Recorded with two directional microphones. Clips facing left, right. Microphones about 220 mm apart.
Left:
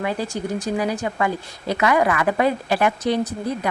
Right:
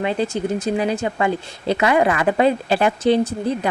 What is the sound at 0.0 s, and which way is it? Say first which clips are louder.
Speech: right 4 dB; 25° right (ahead or behind).